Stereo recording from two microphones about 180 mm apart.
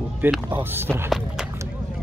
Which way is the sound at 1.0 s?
5° right (ahead or behind).